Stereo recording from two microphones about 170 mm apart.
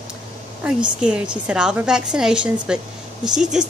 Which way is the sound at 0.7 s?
5° right (ahead or behind).